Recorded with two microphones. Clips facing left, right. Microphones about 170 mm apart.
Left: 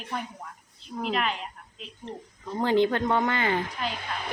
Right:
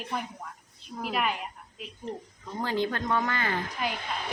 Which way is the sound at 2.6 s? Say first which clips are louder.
Left 6 dB; 25° left (ahead or behind).